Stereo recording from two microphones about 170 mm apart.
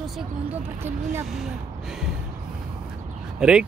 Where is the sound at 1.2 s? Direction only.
Centre (ahead or behind).